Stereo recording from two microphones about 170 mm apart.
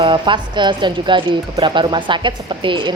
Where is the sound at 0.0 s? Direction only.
30° right (ahead or behind).